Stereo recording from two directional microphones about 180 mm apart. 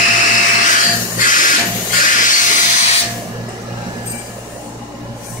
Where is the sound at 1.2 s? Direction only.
45° left (ahead or behind).